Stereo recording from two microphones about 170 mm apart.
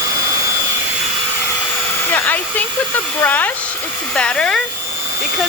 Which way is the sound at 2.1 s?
10° left (ahead or behind).